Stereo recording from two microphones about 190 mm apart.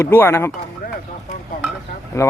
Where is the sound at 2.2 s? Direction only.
15° left (ahead or behind).